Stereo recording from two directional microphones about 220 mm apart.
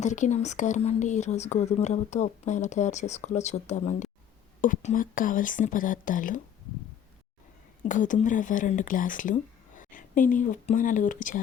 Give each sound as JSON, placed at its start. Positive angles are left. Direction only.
{"t": 0.0, "sound": "speech", "side_deg": 35}
{"t": 7.8, "sound": "speech", "side_deg": 35}